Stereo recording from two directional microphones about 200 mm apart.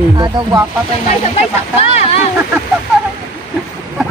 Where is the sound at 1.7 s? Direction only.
30° left (ahead or behind).